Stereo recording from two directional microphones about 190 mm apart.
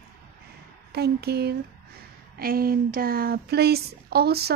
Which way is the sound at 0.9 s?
55° right (ahead or behind).